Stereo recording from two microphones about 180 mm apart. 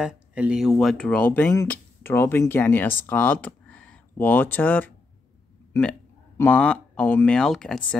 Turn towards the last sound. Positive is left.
turn(degrees=5)  # may be behind; listen again after turning